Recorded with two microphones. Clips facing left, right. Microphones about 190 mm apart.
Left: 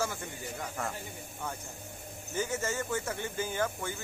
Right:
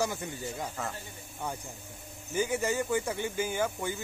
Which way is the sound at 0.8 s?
Centre (ahead or behind).